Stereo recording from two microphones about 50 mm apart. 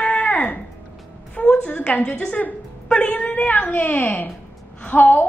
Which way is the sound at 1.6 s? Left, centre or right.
Left.